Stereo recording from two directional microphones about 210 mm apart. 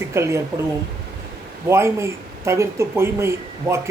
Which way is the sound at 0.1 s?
15° right (ahead or behind).